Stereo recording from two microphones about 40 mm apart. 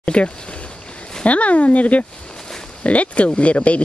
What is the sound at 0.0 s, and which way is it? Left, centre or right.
Speech, left.